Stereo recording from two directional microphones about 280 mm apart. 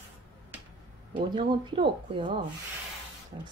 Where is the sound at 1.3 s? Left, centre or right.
Centre.